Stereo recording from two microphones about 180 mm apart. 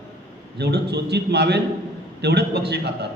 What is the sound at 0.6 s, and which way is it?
A man's voice, 65° right (ahead or behind).